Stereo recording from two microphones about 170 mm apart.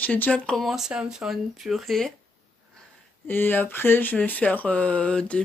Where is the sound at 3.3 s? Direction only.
10° left (ahead or behind).